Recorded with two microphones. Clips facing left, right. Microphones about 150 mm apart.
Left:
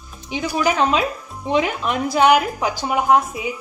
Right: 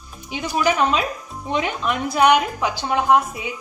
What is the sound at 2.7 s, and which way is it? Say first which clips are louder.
Speech: left 1 dB; 10° left (ahead or behind).